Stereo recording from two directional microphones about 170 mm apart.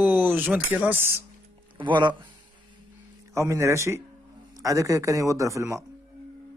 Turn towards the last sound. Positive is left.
turn(degrees=-15)  # may be behind; listen again after turning